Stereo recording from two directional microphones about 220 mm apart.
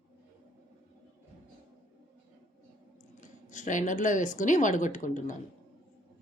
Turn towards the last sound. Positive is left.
turn(degrees=35)  # may be behind; listen again after turning